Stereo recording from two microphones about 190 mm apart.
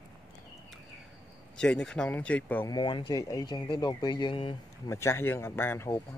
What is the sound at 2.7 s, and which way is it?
Speech, 25° left (ahead or behind).